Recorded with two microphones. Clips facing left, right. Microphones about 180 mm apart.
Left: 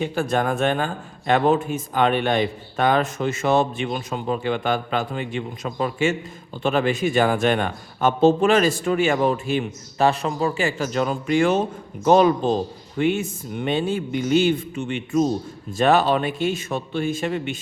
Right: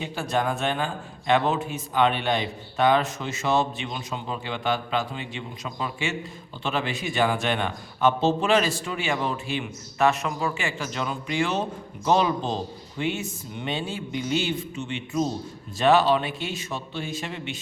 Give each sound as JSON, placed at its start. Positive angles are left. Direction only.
{"t": 0.0, "sound": "a man's voice", "side_deg": 50}
{"t": 10.0, "sound": "a man's voice", "side_deg": 30}